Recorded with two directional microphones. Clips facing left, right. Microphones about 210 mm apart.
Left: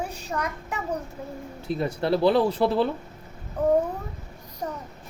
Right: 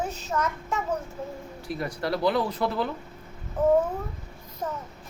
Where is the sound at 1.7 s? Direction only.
25° left (ahead or behind).